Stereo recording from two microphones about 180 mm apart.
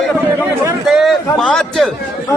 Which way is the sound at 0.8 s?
Centre (ahead or behind).